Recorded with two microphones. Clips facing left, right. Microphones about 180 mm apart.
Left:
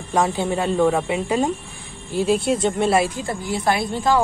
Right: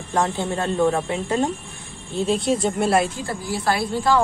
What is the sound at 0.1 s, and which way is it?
Speech, 10° left (ahead or behind).